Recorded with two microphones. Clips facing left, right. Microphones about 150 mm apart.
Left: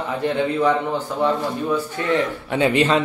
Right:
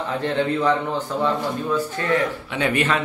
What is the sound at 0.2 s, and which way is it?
Speech, 10° left (ahead or behind).